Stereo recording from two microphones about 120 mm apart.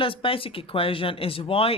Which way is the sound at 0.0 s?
50° left (ahead or behind).